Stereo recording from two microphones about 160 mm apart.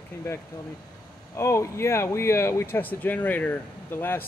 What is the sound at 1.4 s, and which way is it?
Speech, 15° left (ahead or behind).